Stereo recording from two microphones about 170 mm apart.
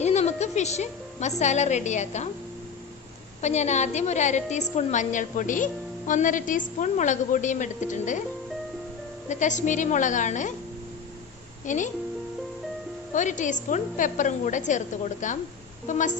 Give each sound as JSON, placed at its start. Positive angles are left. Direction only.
{"t": 0.0, "sound": "music", "side_deg": 40}
{"t": 1.4, "sound": "a woman's voice", "side_deg": 45}
{"t": 3.4, "sound": "a woman's voice", "side_deg": 40}
{"t": 9.3, "sound": "a woman's voice", "side_deg": 45}
{"t": 11.6, "sound": "speech", "side_deg": 45}
{"t": 13.1, "sound": "a woman's voice", "side_deg": 45}